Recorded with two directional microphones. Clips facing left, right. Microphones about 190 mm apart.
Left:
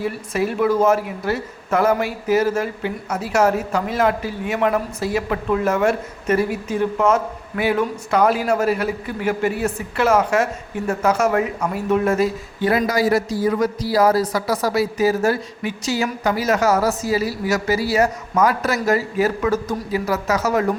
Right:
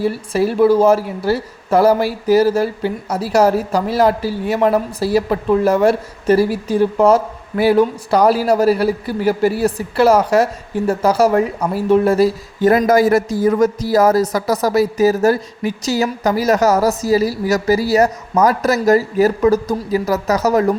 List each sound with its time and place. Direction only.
0.0 s a woman's voice: 30° right (ahead or behind)